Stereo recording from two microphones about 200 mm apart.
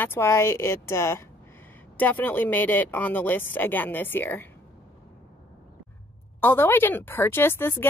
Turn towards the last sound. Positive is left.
turn(degrees=10)  # may be behind; listen again after turning